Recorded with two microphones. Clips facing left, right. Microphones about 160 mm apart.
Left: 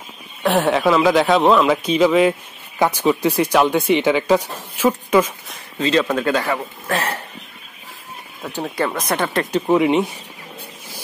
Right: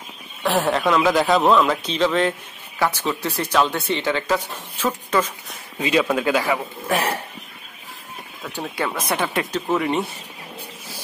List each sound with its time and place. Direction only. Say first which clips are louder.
0.4 s speech: left 3 dB; centre (ahead or behind)
5.8 s a man's voice: left 2 dB; 10° right (ahead or behind)
8.7 s speech: left 3 dB; centre (ahead or behind)
9.5 s speech: left 6 dB; 15° left (ahead or behind)